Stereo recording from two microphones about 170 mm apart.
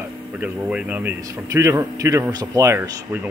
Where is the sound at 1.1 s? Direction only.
20° right (ahead or behind).